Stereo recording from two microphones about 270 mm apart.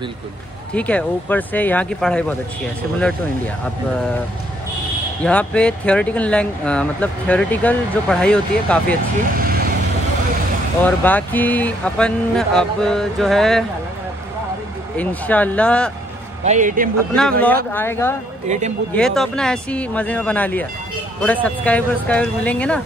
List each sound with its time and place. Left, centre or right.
0.7 s speech: centre
5.2 s speech: centre
9.4 s vehicle: right
10.8 s speech: centre
15.0 s speech: centre
16.4 s a man's voice: right
17.1 s speech: centre